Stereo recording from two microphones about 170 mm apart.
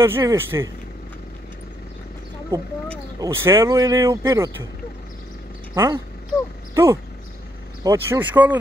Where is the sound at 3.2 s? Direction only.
15° right (ahead or behind).